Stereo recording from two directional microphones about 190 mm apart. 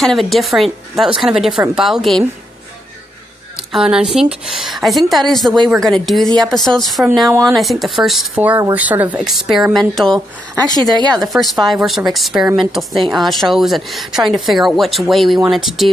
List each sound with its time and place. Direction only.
0.0 s speech: centre (ahead or behind)
3.5 s speech: 5° right (ahead or behind)
6.2 s speech: 20° right (ahead or behind)
6.5 s speech: centre (ahead or behind)